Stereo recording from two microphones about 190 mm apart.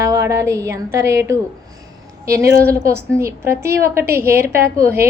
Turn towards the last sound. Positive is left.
turn(degrees=-15)  # may be behind; listen again after turning